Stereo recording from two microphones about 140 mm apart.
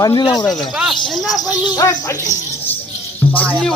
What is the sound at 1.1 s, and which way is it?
Speech, centre (ahead or behind).